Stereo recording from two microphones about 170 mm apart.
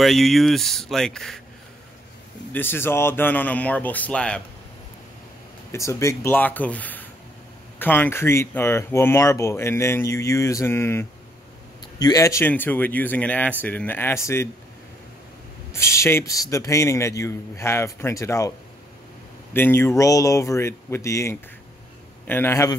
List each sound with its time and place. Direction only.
0.0 s speech: centre (ahead or behind)
2.5 s speech: 10° left (ahead or behind)
5.7 s speech: 15° left (ahead or behind)
15.7 s speech: 15° left (ahead or behind)
19.5 s speech: 15° left (ahead or behind)